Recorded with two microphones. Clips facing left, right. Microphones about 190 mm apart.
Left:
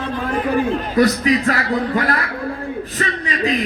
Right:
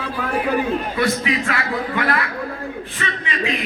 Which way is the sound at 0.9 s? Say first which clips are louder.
Left 10 dB; 40° left (ahead or behind).